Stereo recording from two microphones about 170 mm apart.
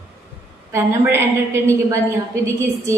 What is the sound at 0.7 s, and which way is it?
A woman's voice, 15° right (ahead or behind).